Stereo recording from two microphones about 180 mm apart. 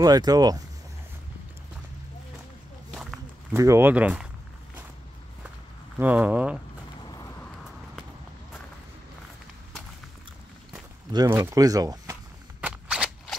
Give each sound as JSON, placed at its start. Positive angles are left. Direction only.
{"t": 0.0, "sound": "speech", "side_deg": -20}
{"t": 2.9, "sound": "walk", "side_deg": 0}
{"t": 3.5, "sound": "speech", "side_deg": -15}
{"t": 5.9, "sound": "speech", "side_deg": -10}
{"t": 7.1, "sound": "vehicle", "side_deg": 20}
{"t": 11.1, "sound": "speech", "side_deg": -20}
{"t": 12.6, "sound": "cap gun", "side_deg": -5}